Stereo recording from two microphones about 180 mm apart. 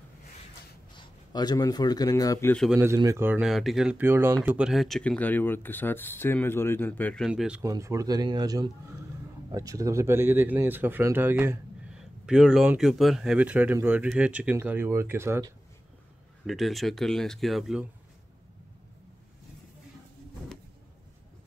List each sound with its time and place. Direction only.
0.9 s a man's voice: 25° left (ahead or behind)
2.5 s speech: centre (ahead or behind)
2.8 s speech: 15° right (ahead or behind); by 7.2 s 10° left (ahead or behind)
7.2 s speech: 5° right (ahead or behind)
7.6 s speech: 20° right (ahead or behind)
16.4 s speech: centre (ahead or behind)